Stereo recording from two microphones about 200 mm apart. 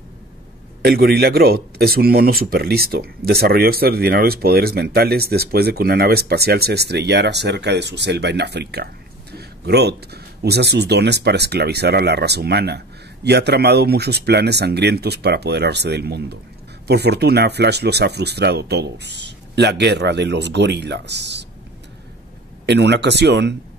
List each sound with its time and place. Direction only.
0.8 s speech: 50° right (ahead or behind)
22.7 s speech: 60° right (ahead or behind)